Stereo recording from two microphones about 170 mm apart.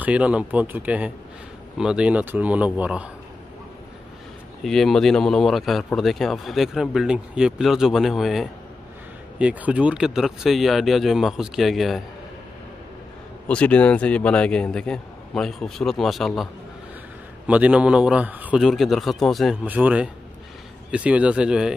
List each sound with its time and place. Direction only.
0.0 s a man's voice: 5° right (ahead or behind)
4.6 s a man's voice: centre (ahead or behind)
13.5 s a man's voice: 5° left (ahead or behind)
17.5 s a man's voice: 5° right (ahead or behind)